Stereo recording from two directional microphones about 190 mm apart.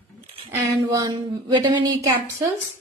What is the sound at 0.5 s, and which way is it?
A woman's voice, 20° right (ahead or behind).